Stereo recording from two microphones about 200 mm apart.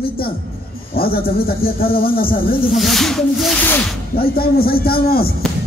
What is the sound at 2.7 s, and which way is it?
Rub, centre (ahead or behind).